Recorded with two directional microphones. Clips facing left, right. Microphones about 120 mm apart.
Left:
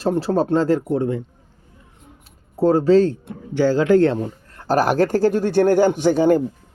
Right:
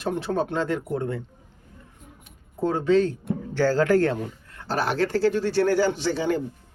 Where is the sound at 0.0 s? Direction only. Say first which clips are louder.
Left 6 dB; 35° left (ahead or behind).